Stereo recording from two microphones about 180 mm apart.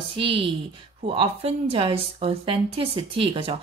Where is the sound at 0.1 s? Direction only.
30° right (ahead or behind).